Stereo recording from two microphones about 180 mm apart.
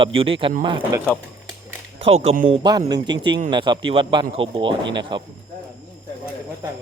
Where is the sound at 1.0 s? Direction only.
5° left (ahead or behind).